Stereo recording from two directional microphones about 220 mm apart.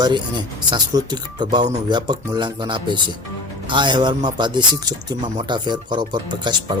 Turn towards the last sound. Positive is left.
turn(degrees=-20)  # may be behind; listen again after turning